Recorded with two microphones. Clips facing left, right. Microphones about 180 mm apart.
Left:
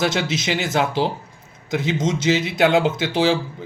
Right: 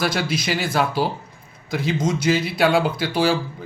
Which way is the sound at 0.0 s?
20° left (ahead or behind).